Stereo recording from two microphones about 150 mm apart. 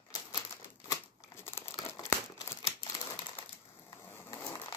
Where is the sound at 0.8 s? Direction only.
15° left (ahead or behind).